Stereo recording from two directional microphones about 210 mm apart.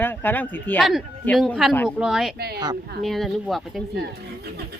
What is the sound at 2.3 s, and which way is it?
Speech, 50° right (ahead or behind).